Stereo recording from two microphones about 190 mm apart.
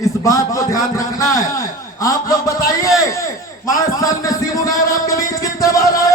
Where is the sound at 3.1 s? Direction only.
15° left (ahead or behind).